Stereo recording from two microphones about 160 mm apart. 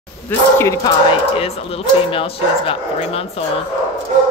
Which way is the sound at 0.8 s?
35° left (ahead or behind).